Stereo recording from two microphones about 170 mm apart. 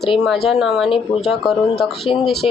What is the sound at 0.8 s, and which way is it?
Speech, 30° left (ahead or behind).